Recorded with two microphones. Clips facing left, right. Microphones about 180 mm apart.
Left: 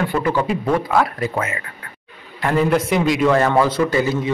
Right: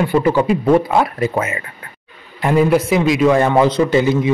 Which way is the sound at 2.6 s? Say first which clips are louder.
Right 3 dB; 5° right (ahead or behind).